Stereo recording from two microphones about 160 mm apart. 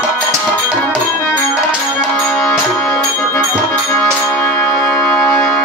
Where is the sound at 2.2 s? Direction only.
5° left (ahead or behind).